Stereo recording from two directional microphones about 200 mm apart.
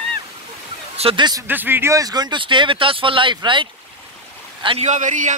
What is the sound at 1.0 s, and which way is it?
Speech, 25° right (ahead or behind).